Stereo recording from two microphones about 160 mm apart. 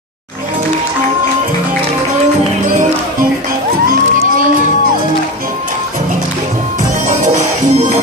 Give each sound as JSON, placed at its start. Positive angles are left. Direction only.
{"t": 7.1, "sound": "music", "side_deg": -50}